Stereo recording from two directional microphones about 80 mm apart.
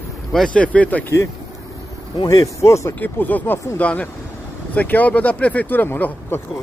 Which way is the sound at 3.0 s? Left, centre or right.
Left.